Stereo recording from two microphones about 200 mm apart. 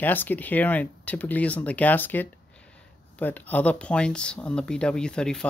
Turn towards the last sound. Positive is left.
turn(degrees=5)  # may be behind; listen again after turning